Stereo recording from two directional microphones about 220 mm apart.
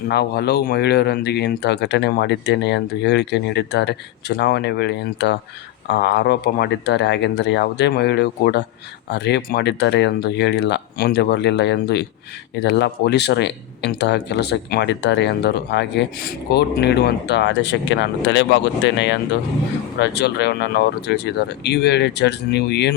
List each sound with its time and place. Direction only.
0.1 s speech: 50° left (ahead or behind)